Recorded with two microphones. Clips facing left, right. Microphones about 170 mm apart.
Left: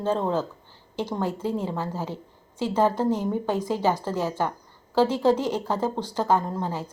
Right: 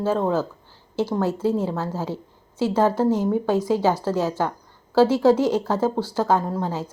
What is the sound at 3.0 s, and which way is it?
A woman's voice, 10° right (ahead or behind).